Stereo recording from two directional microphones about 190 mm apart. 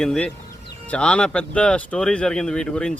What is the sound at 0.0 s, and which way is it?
Speech, 5° left (ahead or behind).